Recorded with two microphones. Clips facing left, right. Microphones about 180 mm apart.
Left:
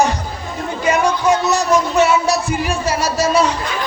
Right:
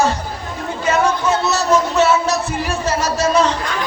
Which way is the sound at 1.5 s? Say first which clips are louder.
Left 1 dB; 15° left (ahead or behind).